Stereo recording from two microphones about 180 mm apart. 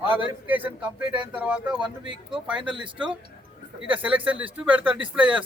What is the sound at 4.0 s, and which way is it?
Speech, 10° right (ahead or behind).